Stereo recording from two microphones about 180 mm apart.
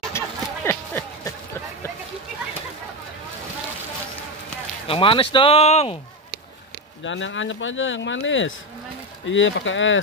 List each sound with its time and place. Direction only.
0.2 s a sound: 15° left (ahead or behind)
4.8 s speech: 30° left (ahead or behind)
7.1 s speech: 90° left